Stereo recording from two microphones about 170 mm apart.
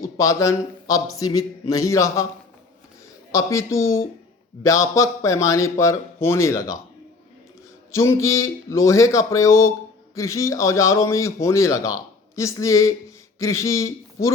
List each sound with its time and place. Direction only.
0.2 s speech: 15° left (ahead or behind)
3.3 s speech: 15° left (ahead or behind)
7.9 s speech: 15° left (ahead or behind)